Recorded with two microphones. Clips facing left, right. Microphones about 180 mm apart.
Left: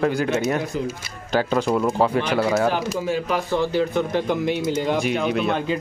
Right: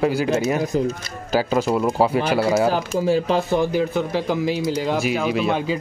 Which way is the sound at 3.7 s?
5° right (ahead or behind).